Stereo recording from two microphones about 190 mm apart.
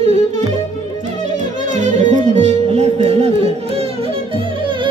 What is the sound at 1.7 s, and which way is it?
Music, 40° right (ahead or behind).